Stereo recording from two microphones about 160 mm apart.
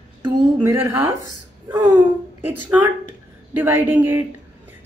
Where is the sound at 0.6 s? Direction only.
15° right (ahead or behind).